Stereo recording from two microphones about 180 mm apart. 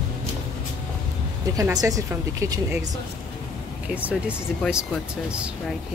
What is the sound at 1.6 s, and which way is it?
A woman's voice, 20° right (ahead or behind).